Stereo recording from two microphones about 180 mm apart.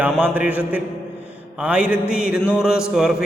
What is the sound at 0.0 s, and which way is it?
A man's voice, 10° right (ahead or behind).